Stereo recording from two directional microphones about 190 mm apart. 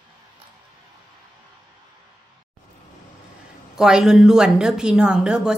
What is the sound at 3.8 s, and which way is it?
A woman's voice, 5° right (ahead or behind).